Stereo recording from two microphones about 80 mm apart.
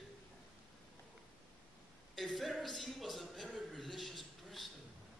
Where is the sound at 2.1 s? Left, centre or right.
Centre.